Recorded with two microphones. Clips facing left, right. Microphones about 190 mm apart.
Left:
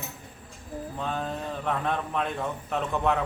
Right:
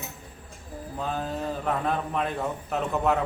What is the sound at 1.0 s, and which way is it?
A man's voice, 5° right (ahead or behind).